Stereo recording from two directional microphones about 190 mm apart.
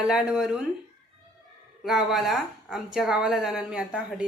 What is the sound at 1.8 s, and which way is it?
A woman's voice, centre (ahead or behind).